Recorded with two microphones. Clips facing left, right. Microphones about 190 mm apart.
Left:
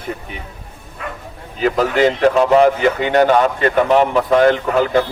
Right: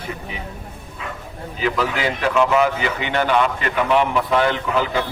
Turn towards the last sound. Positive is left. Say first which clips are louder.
# left 6 dB
turn(degrees=50)  # may be behind; listen again after turning